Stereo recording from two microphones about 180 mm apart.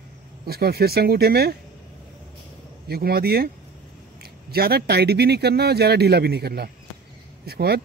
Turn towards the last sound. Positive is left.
turn(degrees=-60)  # may be behind; listen again after turning